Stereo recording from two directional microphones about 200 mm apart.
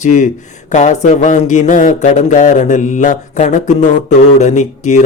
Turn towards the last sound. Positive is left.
turn(degrees=35)  # may be behind; listen again after turning